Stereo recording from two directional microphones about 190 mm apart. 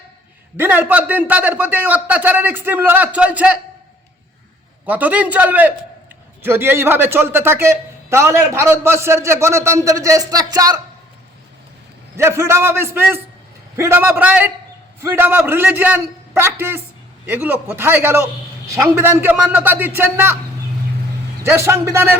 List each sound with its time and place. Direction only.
0.5 s a man's voice: 10° right (ahead or behind)
4.9 s a man's voice: 10° right (ahead or behind)
12.1 s a man's voice: 15° right (ahead or behind)
21.4 s a man's voice: 15° right (ahead or behind)